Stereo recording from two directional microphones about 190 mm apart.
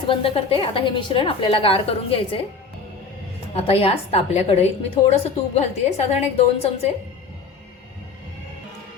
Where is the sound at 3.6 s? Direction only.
30° left (ahead or behind).